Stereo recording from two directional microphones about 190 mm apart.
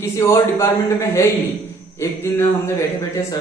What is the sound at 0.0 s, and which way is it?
Speech, 15° left (ahead or behind).